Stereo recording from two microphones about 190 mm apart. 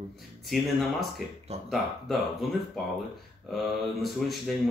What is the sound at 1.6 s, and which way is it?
Speech, centre (ahead or behind).